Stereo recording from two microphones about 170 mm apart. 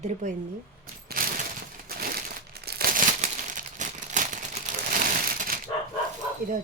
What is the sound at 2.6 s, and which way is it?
Crumpling, 65° right (ahead or behind).